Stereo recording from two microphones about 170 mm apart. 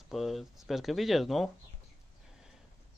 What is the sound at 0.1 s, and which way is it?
Speech, centre (ahead or behind).